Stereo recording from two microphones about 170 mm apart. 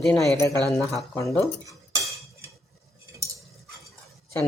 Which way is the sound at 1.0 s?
20° left (ahead or behind).